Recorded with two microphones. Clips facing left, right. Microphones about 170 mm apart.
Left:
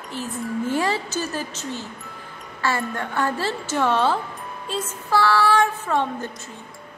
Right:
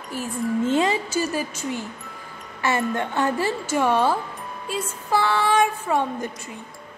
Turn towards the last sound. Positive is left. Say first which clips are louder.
# even
turn(degrees=-15)  # may be behind; listen again after turning